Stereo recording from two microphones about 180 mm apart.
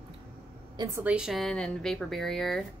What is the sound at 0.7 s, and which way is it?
Speech, 20° right (ahead or behind).